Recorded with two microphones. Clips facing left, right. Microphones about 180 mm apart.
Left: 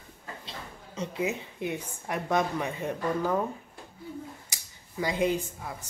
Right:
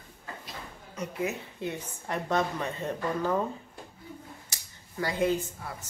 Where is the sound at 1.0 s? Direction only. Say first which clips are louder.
Left 2 dB; 20° left (ahead or behind).